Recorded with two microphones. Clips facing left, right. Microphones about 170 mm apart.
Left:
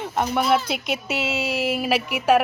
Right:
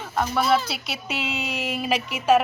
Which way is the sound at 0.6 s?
50° left (ahead or behind).